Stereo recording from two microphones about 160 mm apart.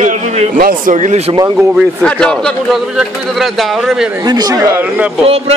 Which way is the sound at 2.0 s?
5° left (ahead or behind).